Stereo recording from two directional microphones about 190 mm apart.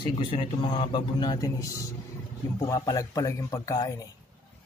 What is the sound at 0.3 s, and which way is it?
A man's voice, 25° left (ahead or behind).